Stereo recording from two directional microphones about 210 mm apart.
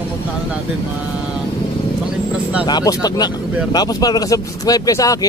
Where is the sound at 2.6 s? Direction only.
20° left (ahead or behind).